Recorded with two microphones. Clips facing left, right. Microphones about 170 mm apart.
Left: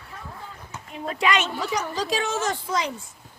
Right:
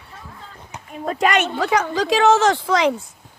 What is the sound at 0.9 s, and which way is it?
A woman's voice, 45° right (ahead or behind).